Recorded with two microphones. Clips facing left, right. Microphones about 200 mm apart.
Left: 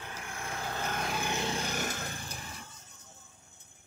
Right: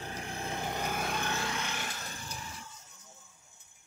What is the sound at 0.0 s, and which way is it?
Vehicle, 35° right (ahead or behind).